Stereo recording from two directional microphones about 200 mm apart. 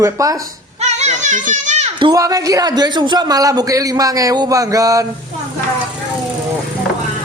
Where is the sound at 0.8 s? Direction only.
35° right (ahead or behind).